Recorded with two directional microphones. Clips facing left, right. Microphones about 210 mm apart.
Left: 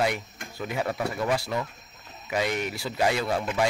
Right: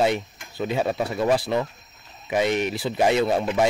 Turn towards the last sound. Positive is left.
turn(degrees=-25)  # may be behind; listen again after turning